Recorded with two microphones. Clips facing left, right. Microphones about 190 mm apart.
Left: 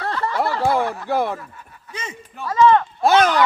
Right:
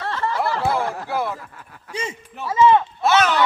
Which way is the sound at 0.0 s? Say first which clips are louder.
Left 1 dB; 40° left (ahead or behind).